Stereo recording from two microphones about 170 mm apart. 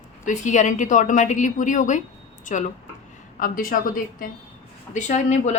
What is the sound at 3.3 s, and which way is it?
A woman's voice, 55° left (ahead or behind).